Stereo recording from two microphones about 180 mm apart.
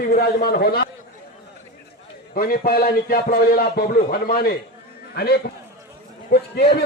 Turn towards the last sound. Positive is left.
turn(degrees=60)  # may be behind; listen again after turning